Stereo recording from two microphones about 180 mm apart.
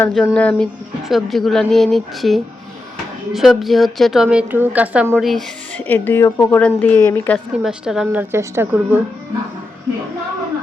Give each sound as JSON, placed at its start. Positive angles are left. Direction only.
{"t": 0.0, "sound": "speech", "side_deg": 5}
{"t": 5.1, "sound": "speech", "side_deg": 5}
{"t": 7.6, "sound": "a woman's voice", "side_deg": -5}